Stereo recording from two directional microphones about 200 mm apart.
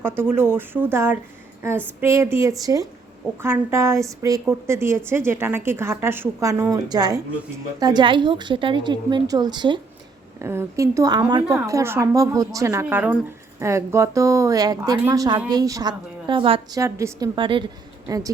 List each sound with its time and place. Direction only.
0.0 s a woman's voice: 10° right (ahead or behind)